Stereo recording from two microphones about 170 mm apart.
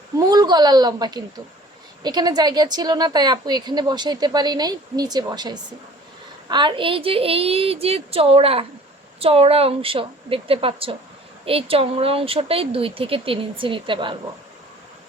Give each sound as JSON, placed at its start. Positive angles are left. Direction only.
{"t": 0.2, "sound": "a woman's voice", "side_deg": -25}